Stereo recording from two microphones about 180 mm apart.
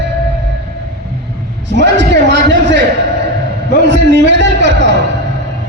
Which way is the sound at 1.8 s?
75° right (ahead or behind).